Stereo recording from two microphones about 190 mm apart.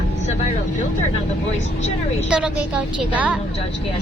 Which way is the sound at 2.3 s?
5° right (ahead or behind).